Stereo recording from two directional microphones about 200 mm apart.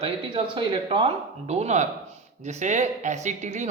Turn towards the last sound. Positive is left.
turn(degrees=-35)  # may be behind; listen again after turning